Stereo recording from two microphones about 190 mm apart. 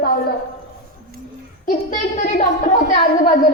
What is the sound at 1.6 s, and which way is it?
A child's voice, 45° left (ahead or behind).